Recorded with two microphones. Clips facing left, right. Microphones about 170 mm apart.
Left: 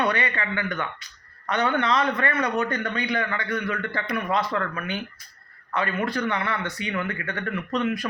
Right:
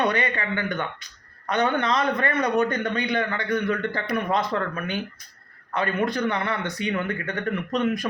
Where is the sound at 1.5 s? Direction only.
15° right (ahead or behind).